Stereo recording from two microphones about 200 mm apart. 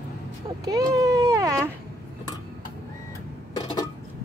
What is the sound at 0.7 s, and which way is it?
Speech, 15° right (ahead or behind).